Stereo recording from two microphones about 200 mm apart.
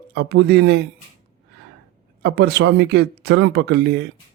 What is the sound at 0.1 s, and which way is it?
Speech, 55° right (ahead or behind).